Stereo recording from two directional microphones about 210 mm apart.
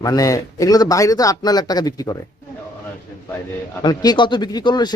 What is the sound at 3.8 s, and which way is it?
Speech, 20° left (ahead or behind).